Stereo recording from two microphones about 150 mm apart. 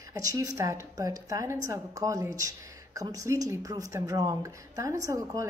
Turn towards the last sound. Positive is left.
turn(degrees=-20)  # may be behind; listen again after turning